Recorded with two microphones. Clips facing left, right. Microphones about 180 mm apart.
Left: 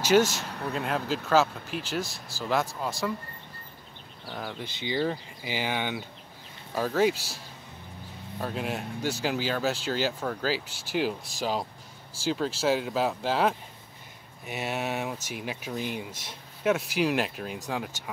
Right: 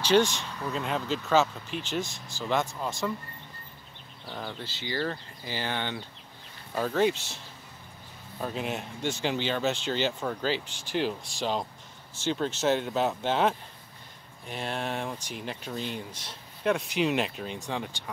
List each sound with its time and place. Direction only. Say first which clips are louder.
0.0 s speech: left 1 dB; 10° left (ahead or behind)
2.0 s speech: left 1 dB; 40° left (ahead or behind)
2.4 s speech: left 1 dB; centre (ahead or behind)
4.3 s speech: left 1 dB; 5° left (ahead or behind)
4.6 s speech: left 4 dB; 15° left (ahead or behind); by 7.3 s centre (ahead or behind)
8.4 s speech: left 1 dB; centre (ahead or behind)
12.2 s speech: left 1 dB; centre (ahead or behind)